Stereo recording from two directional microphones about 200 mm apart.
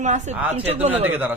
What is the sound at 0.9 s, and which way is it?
Speech, 10° right (ahead or behind).